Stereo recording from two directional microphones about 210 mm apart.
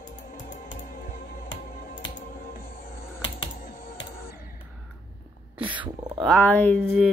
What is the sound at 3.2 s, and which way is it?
Computer keyboard, 25° left (ahead or behind).